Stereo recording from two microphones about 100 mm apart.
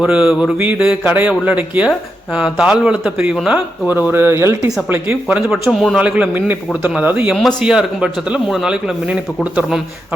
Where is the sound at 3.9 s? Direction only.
20° right (ahead or behind).